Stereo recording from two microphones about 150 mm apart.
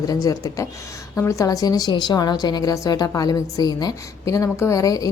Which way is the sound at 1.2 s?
20° left (ahead or behind).